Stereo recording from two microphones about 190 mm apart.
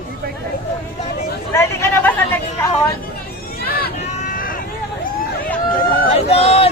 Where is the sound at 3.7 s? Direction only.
50° left (ahead or behind).